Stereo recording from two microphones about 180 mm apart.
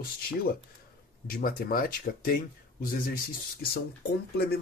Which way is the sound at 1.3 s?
55° left (ahead or behind).